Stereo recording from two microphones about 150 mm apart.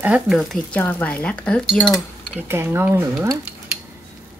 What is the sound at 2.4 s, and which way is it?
Speech, 15° right (ahead or behind).